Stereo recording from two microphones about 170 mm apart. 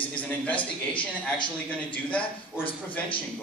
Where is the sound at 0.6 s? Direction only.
30° left (ahead or behind).